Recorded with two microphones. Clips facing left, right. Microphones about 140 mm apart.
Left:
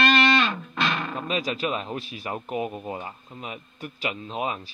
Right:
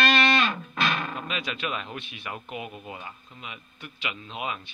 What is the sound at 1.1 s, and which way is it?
Speech, 35° left (ahead or behind).